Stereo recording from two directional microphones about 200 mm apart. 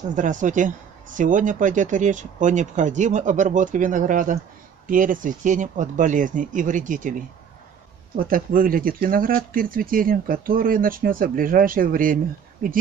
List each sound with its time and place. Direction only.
0.1 s speech: 40° right (ahead or behind)